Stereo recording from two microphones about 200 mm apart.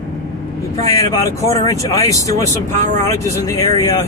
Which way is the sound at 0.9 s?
15° left (ahead or behind).